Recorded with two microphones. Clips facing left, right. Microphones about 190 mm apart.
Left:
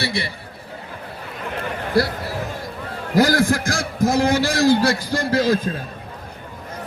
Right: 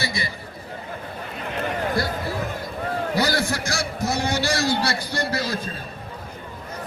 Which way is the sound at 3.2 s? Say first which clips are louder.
Left 9 dB; 90° left.